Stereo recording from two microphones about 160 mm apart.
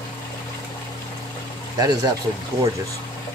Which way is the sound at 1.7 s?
25° right (ahead or behind).